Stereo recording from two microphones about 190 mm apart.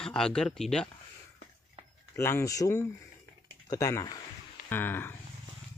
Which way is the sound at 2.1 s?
15° left (ahead or behind).